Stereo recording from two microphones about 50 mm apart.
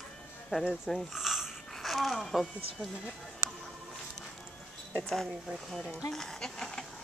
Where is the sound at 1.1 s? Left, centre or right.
Centre.